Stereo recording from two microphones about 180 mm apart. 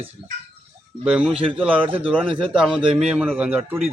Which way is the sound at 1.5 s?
5° right (ahead or behind).